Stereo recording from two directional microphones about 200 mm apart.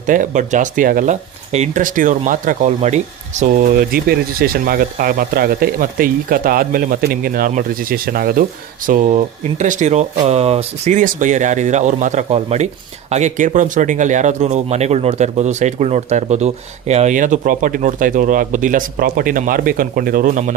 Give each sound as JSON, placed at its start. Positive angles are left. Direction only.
{"t": 0.0, "sound": "speech", "side_deg": -40}